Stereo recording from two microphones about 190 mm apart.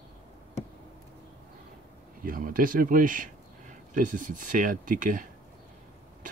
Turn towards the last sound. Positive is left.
turn(degrees=-45)  # may be behind; listen again after turning